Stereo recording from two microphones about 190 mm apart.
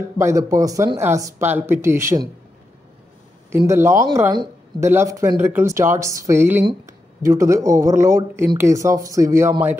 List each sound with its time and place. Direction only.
0.2 s speech: 15° right (ahead or behind)
3.5 s speech: 15° right (ahead or behind)